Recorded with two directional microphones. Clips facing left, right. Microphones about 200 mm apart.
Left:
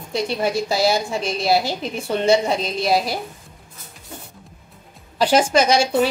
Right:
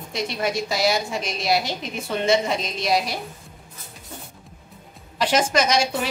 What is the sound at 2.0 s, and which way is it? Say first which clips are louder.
Speech: left 3 dB; 35° left (ahead or behind).